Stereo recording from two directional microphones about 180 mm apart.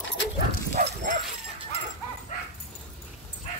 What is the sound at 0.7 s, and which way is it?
Bow-wow, 45° right (ahead or behind).